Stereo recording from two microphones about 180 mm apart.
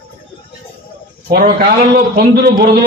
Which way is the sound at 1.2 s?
60° right (ahead or behind).